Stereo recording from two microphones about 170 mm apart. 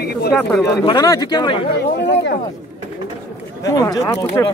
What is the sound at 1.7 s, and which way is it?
Speech, 80° left.